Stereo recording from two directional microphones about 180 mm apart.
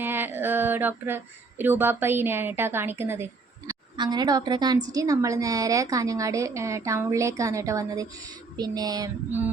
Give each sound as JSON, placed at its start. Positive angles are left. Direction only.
{"t": 0.0, "sound": "speech", "side_deg": -10}
{"t": 3.7, "sound": "a woman's voice", "side_deg": -25}